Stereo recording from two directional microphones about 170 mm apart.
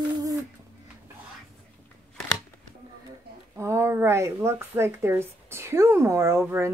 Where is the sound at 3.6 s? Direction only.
15° right (ahead or behind).